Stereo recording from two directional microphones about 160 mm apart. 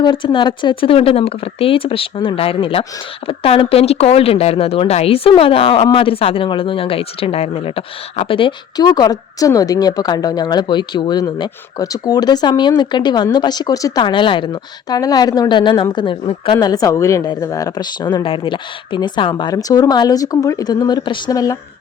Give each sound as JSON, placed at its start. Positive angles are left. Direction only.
{"t": 0.0, "sound": "a woman's voice", "side_deg": 30}